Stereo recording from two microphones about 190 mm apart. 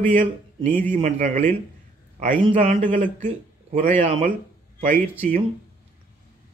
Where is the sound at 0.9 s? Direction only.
35° right (ahead or behind).